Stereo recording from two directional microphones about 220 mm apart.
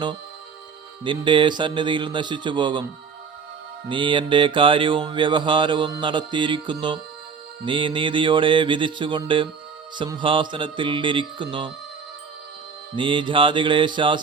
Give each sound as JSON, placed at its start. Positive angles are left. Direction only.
{"t": 1.0, "sound": "music", "side_deg": -20}
{"t": 13.0, "sound": "music", "side_deg": -20}